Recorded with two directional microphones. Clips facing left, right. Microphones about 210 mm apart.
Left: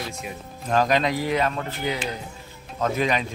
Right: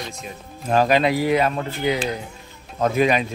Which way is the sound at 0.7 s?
10° right (ahead or behind).